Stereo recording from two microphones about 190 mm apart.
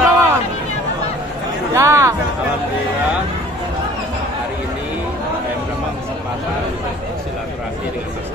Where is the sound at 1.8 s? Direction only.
15° right (ahead or behind).